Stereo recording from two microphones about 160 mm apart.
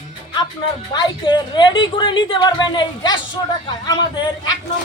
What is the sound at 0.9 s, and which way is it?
A woman's voice, 25° left (ahead or behind).